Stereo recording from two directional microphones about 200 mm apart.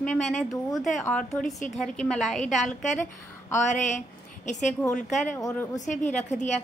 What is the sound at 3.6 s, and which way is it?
A woman's voice, 40° left (ahead or behind).